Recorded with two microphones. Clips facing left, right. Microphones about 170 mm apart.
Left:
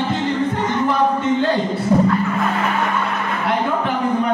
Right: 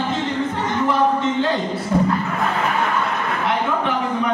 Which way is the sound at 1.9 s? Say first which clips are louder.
Left 3 dB; 20° left (ahead or behind).